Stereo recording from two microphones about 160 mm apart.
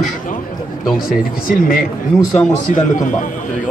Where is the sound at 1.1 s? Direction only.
65° left (ahead or behind).